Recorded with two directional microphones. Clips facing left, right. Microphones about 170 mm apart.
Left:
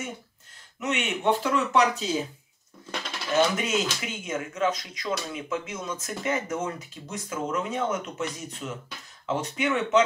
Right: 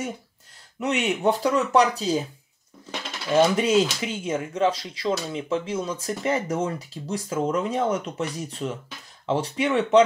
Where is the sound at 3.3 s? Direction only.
35° right (ahead or behind).